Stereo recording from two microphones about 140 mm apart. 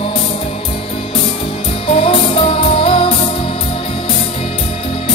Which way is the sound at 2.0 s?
40° left (ahead or behind).